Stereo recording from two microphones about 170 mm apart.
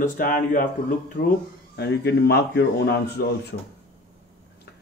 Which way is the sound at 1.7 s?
70° left (ahead or behind).